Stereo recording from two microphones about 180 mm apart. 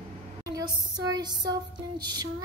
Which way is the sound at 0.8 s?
25° right (ahead or behind).